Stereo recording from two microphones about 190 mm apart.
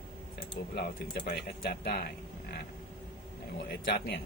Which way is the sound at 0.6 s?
55° left (ahead or behind).